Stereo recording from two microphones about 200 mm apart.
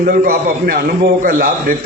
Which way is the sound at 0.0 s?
45° right (ahead or behind).